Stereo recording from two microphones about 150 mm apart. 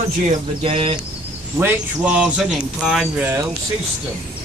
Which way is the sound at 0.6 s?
35° right (ahead or behind).